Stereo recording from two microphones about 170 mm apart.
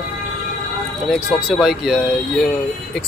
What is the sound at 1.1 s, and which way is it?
Speech, centre (ahead or behind).